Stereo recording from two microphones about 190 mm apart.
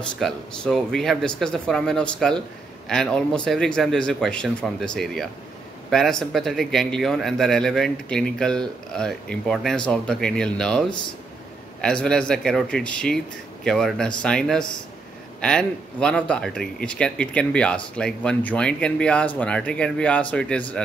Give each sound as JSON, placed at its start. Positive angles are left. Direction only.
{"t": 0.2, "sound": "speech", "side_deg": 0}